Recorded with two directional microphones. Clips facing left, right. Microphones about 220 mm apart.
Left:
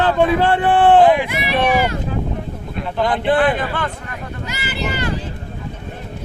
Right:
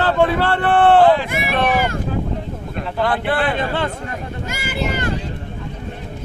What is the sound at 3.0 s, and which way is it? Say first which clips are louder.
Speech: left 3 dB; 15° left (ahead or behind).